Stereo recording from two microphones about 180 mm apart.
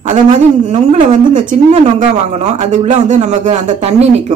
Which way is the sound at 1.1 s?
45° right (ahead or behind).